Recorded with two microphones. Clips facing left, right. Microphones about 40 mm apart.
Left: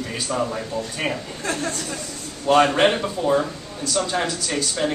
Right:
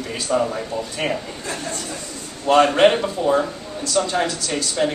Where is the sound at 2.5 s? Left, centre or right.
Centre.